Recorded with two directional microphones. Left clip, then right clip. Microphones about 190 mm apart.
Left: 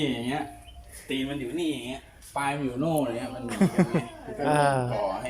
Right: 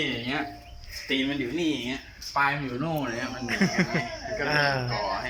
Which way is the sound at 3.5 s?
15° left (ahead or behind).